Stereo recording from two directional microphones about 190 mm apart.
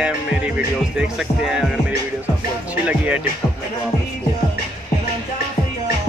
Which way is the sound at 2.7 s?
5° right (ahead or behind).